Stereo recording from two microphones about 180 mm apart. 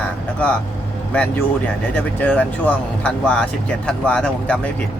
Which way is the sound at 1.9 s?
10° left (ahead or behind).